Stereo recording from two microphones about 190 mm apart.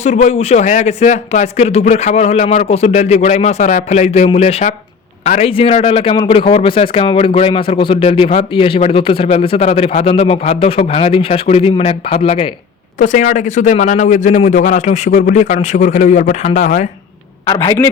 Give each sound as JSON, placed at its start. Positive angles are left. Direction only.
{"t": 0.0, "sound": "a man's voice", "side_deg": 35}
{"t": 13.0, "sound": "a man's voice", "side_deg": 45}
{"t": 17.4, "sound": "a man's voice", "side_deg": 15}